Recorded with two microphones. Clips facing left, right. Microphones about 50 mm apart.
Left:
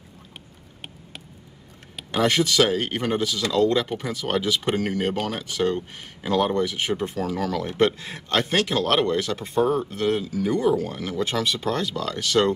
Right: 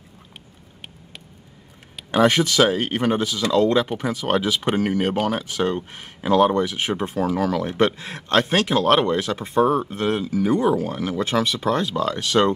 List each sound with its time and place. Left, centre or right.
2.0 s speech: right